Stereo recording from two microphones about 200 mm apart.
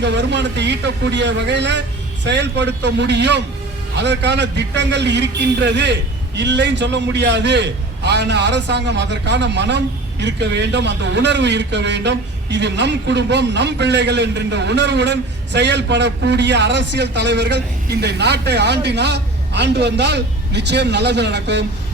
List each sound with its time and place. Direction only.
0.0 s a man's voice: 60° right (ahead or behind)